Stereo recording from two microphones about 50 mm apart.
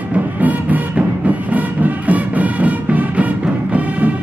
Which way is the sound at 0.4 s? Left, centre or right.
Right.